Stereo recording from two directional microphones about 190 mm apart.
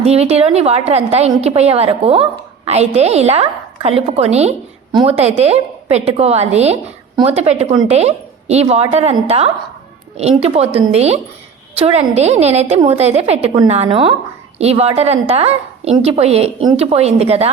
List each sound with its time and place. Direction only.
0.0 s a woman's voice: 35° right (ahead or behind)